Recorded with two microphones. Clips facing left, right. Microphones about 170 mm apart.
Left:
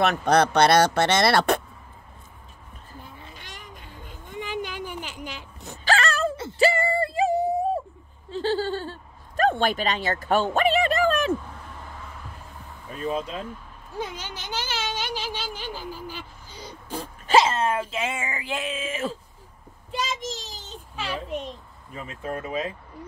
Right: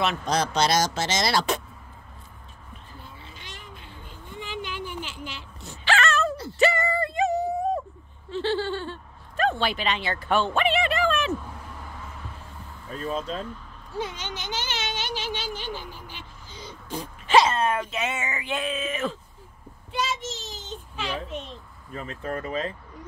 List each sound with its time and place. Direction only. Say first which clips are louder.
0.0 s speech: left 5 dB; 60° left (ahead or behind)
3.7 s vehicle: left 1 dB; 45° left (ahead or behind)
5.1 s a sound: left 1 dB; 45° left (ahead or behind)
12.9 s speech: left 1 dB; 15° left (ahead or behind)
15.0 s a sound: even; 10° left (ahead or behind)
17.3 s speech: even; 25° left (ahead or behind)
20.4 s baby cry: right 3 dB; 10° left (ahead or behind)
21.9 s speech: right 1 dB; 10° left (ahead or behind)